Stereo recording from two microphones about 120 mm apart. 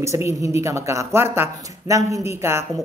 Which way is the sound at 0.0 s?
25° right (ahead or behind).